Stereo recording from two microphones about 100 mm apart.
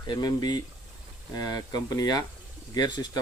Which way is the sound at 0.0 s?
45° left (ahead or behind).